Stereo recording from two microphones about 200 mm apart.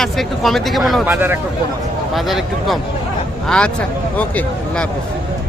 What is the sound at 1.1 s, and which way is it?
Speech, 10° right (ahead or behind).